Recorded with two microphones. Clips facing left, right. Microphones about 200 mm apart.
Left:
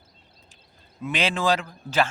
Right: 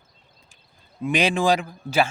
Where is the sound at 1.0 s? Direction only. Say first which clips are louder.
Right 4 dB; 15° right (ahead or behind).